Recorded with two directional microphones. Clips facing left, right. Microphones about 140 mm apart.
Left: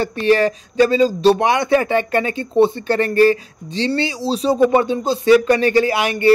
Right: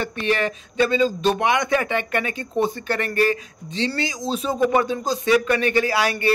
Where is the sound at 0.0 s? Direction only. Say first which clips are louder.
Left 7 dB; 35° left (ahead or behind).